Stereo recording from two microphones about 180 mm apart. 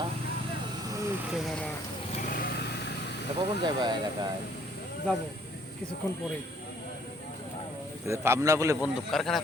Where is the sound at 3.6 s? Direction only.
25° right (ahead or behind).